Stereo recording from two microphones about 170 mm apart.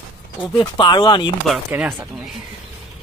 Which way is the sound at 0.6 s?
25° left (ahead or behind).